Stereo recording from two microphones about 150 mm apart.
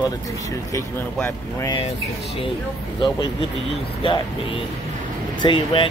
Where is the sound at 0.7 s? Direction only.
20° left (ahead or behind).